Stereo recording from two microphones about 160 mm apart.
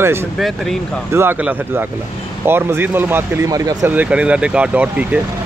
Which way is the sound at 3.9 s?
10° right (ahead or behind).